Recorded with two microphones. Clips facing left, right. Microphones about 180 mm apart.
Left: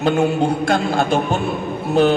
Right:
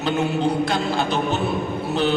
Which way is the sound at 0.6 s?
50° left (ahead or behind).